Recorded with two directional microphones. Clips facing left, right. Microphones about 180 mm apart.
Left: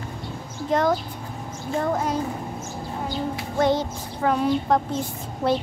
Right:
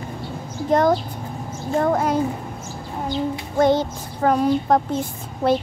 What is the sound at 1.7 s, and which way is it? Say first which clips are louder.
Speech: right 5 dB; 55° right (ahead or behind).